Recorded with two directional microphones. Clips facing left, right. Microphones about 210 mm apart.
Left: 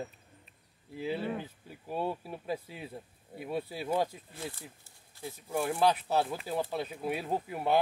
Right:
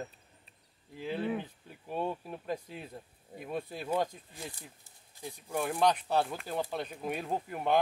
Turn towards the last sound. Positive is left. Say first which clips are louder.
# left 1 dB
turn(degrees=5)  # may be behind; listen again after turning